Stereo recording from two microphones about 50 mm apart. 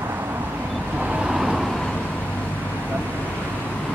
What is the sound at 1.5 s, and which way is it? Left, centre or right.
Vehicle, centre.